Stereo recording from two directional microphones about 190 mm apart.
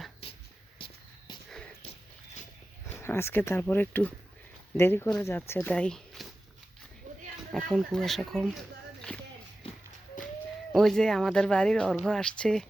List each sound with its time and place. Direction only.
0.8 s walk: 25° left (ahead or behind)
2.9 s speech: 10° left (ahead or behind)
7.5 s speech: centre (ahead or behind)
9.1 s walk: 10° left (ahead or behind)
10.7 s speech: centre (ahead or behind)